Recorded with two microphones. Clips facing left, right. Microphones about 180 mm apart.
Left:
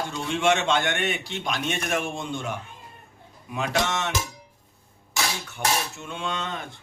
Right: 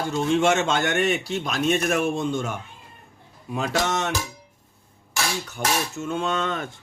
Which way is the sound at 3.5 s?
40° right (ahead or behind).